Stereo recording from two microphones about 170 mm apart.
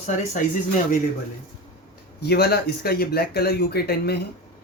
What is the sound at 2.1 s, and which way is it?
Speech, 70° left (ahead or behind).